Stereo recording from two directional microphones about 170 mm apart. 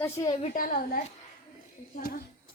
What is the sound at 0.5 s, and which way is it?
Speech, 55° left (ahead or behind).